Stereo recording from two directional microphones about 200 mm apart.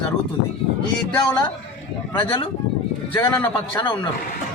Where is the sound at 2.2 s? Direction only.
25° left (ahead or behind).